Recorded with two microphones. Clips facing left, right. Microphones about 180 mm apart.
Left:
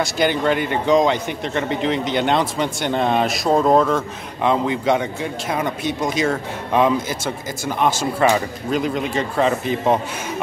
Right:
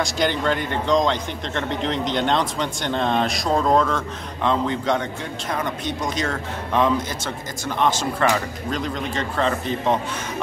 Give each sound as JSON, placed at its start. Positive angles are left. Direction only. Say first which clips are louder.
{"t": 0.0, "sound": "a man's voice", "louder": "left 3 dB", "side_deg": 5}